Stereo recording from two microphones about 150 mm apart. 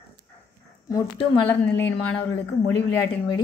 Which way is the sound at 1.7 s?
10° left (ahead or behind).